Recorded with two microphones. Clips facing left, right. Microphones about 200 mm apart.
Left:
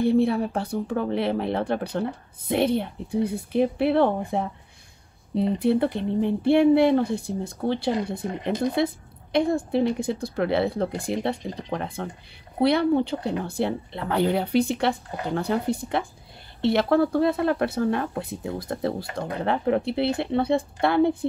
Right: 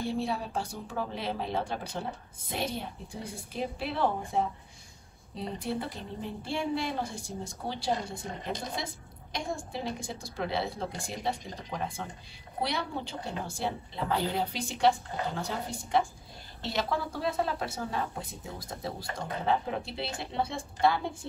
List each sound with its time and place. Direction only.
0.0 s speech: 60° left (ahead or behind)